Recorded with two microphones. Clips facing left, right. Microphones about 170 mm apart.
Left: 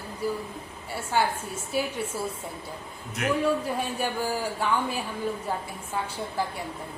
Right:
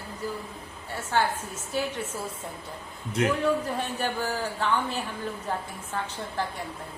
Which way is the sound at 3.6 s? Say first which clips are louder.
Left 1 dB; 10° left (ahead or behind).